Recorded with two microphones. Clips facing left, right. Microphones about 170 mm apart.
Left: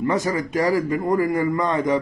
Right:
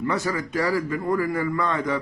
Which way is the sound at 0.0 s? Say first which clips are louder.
Left 4 dB; 20° left (ahead or behind).